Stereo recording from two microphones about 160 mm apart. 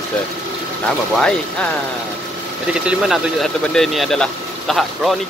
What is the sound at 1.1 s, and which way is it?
Speech, 5° left (ahead or behind).